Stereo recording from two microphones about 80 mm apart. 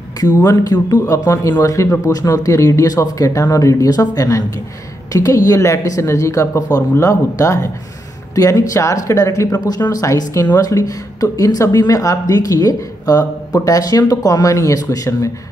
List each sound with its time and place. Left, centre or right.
0.2 s speech: left